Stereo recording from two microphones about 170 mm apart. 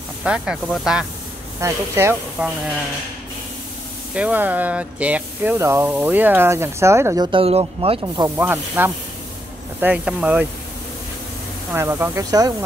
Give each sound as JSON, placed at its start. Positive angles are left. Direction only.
{"t": 0.2, "sound": "speech", "side_deg": -5}
{"t": 1.6, "sound": "speech", "side_deg": -15}
{"t": 4.1, "sound": "speech", "side_deg": -10}
{"t": 7.2, "sound": "speech", "side_deg": -35}
{"t": 8.4, "sound": "speech", "side_deg": -10}
{"t": 11.7, "sound": "speech", "side_deg": -15}